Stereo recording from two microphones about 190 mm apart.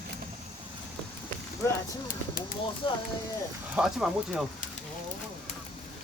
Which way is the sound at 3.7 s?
5° right (ahead or behind).